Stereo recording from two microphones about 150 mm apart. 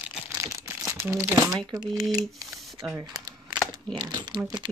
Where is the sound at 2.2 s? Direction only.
Centre (ahead or behind).